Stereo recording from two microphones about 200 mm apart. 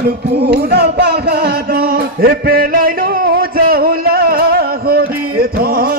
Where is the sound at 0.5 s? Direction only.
50° right (ahead or behind).